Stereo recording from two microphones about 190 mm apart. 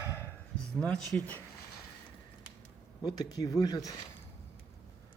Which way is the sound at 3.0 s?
20° left (ahead or behind).